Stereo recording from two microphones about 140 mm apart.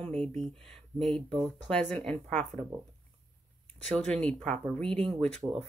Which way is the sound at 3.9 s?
5° left (ahead or behind).